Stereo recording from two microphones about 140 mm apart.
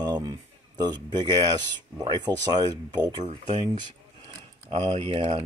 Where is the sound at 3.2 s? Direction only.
55° right (ahead or behind).